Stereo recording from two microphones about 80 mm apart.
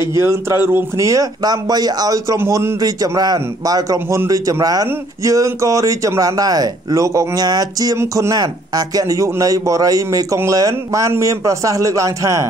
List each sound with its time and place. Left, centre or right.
0.0 s speech: right
8.0 s speech: right